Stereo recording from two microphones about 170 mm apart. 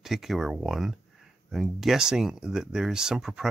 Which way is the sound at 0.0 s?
Centre (ahead or behind).